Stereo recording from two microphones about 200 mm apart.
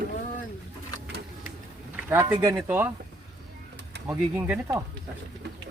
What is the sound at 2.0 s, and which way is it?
Speech, 10° right (ahead or behind).